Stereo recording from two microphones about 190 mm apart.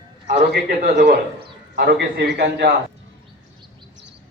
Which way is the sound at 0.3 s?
55° right (ahead or behind).